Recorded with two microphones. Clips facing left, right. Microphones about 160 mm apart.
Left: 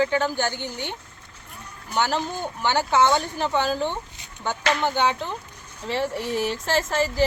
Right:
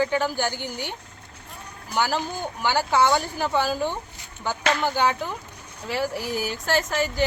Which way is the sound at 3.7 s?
10° right (ahead or behind).